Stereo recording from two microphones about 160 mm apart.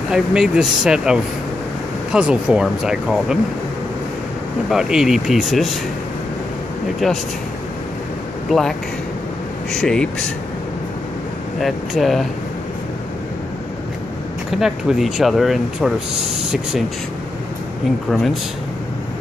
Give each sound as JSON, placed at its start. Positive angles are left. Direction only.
{"t": 0.1, "sound": "speech", "side_deg": -5}
{"t": 4.6, "sound": "speech", "side_deg": -5}
{"t": 8.5, "sound": "speech", "side_deg": 0}
{"t": 11.6, "sound": "speech", "side_deg": 0}
{"t": 14.5, "sound": "speech", "side_deg": 0}
{"t": 18.1, "sound": "speech", "side_deg": 0}